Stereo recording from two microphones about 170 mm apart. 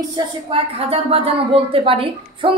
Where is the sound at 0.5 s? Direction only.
35° right (ahead or behind).